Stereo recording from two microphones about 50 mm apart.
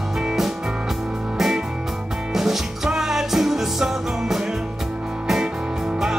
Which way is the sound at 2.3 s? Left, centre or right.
Centre.